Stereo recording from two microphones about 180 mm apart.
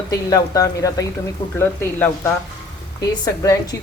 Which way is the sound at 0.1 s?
20° left (ahead or behind).